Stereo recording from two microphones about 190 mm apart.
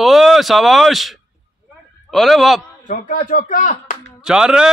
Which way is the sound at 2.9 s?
45° left (ahead or behind).